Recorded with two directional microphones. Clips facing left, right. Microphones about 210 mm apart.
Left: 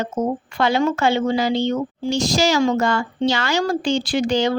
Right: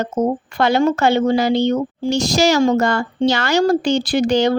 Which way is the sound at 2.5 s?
45° right (ahead or behind).